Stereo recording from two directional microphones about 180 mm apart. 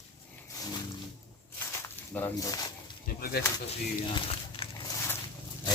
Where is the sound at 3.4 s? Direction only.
60° left (ahead or behind).